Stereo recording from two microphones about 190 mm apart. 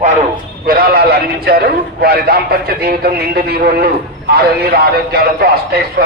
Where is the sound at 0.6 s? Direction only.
50° right (ahead or behind).